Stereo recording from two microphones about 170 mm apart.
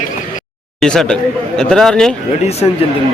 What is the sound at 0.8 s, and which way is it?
Speech, 5° left (ahead or behind).